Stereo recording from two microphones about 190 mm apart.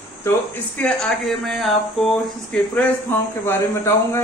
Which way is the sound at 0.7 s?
5° left (ahead or behind).